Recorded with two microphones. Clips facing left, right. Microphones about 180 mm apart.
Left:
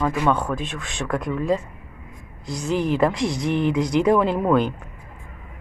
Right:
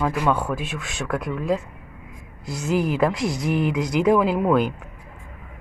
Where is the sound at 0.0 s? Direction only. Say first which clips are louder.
Left 1 dB; 5° right (ahead or behind).